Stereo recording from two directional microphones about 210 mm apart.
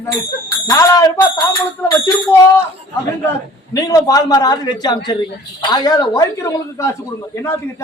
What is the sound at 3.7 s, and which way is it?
A man's voice, 15° left (ahead or behind).